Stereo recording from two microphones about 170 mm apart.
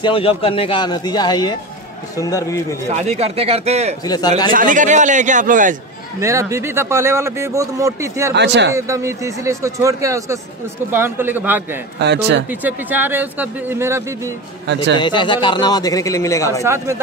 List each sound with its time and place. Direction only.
0.0 s speech: 30° left (ahead or behind)
2.9 s speech: 40° right (ahead or behind)
4.0 s speech: 25° left (ahead or behind)
4.5 s a man's voice: 50° right (ahead or behind)
6.1 s speech: 15° right (ahead or behind)
8.4 s speech: 90° right
8.7 s speech: 15° right (ahead or behind)
12.0 s speech: 90° right
12.4 s speech: 10° right (ahead or behind)
15.0 s speech: 25° left (ahead or behind)
16.6 s speech: 15° right (ahead or behind)